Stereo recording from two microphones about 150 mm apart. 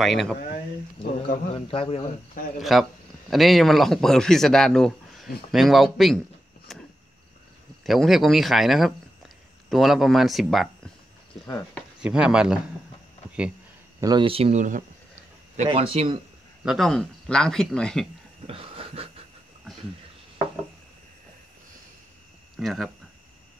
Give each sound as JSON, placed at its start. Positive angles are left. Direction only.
{"t": 0.0, "sound": "speech", "side_deg": 0}
{"t": 1.3, "sound": "a man's voice", "side_deg": 65}
{"t": 1.7, "sound": "speech", "side_deg": 40}
{"t": 2.6, "sound": "speech", "side_deg": 0}
{"t": 6.7, "sound": "cricket", "side_deg": 0}
{"t": 7.8, "sound": "speech", "side_deg": 0}
{"t": 12.0, "sound": "speech", "side_deg": -5}
{"t": 14.0, "sound": "speech", "side_deg": -30}
{"t": 16.6, "sound": "speech", "side_deg": 0}
{"t": 18.5, "sound": "a sound", "side_deg": -40}
{"t": 22.6, "sound": "speech", "side_deg": 0}